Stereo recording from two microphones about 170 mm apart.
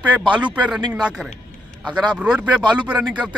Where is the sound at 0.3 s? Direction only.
10° right (ahead or behind).